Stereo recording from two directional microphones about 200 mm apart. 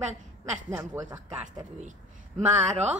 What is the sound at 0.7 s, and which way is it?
Speech, 10° right (ahead or behind).